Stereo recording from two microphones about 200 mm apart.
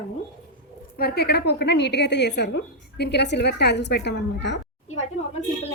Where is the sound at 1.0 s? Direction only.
50° left (ahead or behind).